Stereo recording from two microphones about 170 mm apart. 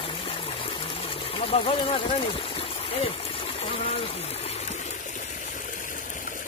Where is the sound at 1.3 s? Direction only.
35° left (ahead or behind).